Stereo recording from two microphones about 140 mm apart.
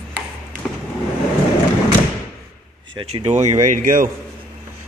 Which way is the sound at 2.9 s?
50° right (ahead or behind).